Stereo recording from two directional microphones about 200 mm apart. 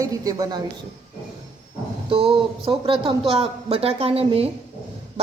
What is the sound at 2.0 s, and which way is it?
A woman's voice, 25° right (ahead or behind).